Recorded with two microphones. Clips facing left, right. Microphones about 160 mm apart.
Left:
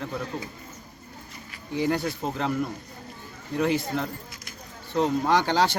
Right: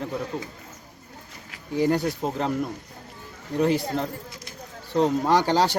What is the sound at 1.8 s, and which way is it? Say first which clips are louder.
Speech: right 3 dB; 40° right (ahead or behind).